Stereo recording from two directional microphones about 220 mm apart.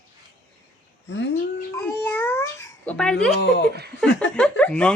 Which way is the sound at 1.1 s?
55° left (ahead or behind).